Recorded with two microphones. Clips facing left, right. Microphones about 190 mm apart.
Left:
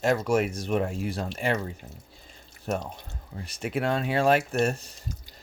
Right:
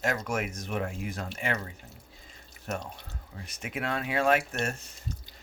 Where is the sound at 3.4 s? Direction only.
35° left (ahead or behind).